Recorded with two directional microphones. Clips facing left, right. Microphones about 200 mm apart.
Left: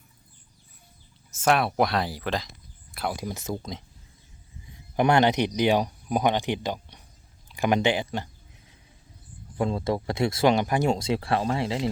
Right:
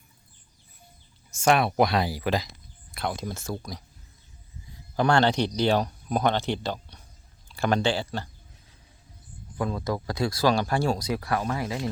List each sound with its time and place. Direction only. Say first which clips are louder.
1.4 s speech: right 1 dB; centre (ahead or behind)
2.9 s speech: even; 5° left (ahead or behind)
9.6 s speech: left 3 dB; 25° left (ahead or behind)